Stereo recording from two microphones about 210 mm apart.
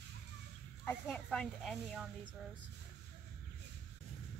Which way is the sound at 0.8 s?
5° left (ahead or behind).